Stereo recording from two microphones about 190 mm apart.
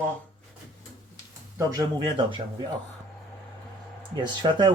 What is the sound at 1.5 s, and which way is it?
Speech, 20° right (ahead or behind).